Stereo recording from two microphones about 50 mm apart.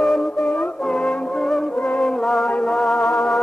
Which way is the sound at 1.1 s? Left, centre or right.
Centre.